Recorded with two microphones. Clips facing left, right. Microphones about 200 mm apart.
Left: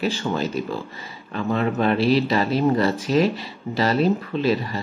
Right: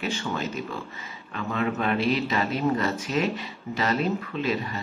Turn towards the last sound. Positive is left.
turn(degrees=35)  # may be behind; listen again after turning